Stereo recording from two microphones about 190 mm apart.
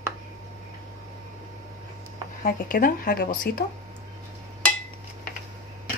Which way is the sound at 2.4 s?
45° left (ahead or behind).